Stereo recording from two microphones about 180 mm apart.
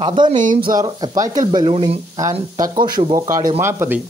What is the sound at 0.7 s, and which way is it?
Speech, 25° right (ahead or behind).